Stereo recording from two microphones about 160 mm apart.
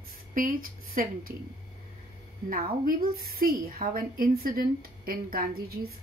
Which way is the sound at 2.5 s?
65° right (ahead or behind).